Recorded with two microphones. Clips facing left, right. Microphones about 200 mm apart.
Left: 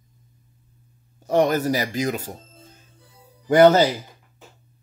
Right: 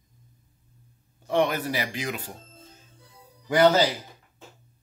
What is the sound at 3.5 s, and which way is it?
Speech, 55° left (ahead or behind).